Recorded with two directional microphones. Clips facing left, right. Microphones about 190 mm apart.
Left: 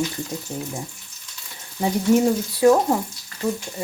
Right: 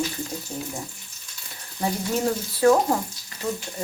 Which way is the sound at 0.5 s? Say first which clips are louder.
Left 3 dB; 20° left (ahead or behind).